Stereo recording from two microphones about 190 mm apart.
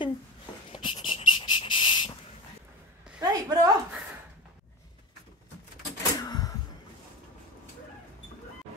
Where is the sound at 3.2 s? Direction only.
20° right (ahead or behind).